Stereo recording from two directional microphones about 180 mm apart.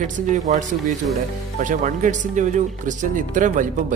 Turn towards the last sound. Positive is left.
turn(degrees=-45)  # may be behind; listen again after turning